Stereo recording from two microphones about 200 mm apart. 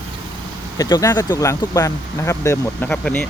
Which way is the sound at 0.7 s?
20° left (ahead or behind).